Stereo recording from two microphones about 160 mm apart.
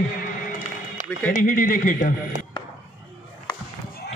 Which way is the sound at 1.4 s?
60° left (ahead or behind).